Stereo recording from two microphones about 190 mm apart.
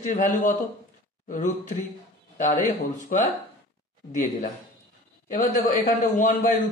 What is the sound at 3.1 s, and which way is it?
Speech, 45° left (ahead or behind).